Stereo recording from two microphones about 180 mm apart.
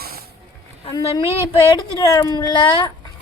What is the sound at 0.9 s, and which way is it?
Speech, 25° left (ahead or behind).